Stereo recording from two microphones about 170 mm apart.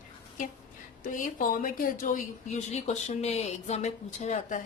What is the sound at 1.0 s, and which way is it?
A woman's voice, 50° left (ahead or behind).